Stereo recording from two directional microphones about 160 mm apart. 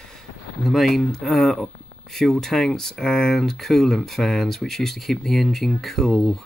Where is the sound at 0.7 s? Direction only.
Centre (ahead or behind).